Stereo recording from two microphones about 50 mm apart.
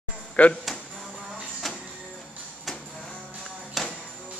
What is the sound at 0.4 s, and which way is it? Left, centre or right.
Speech, left.